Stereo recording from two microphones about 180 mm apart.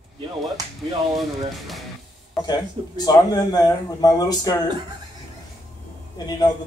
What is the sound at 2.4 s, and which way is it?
A man's voice, 20° left (ahead or behind).